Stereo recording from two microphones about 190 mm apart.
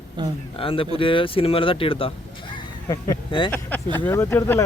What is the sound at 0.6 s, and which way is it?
Speech, 30° left (ahead or behind).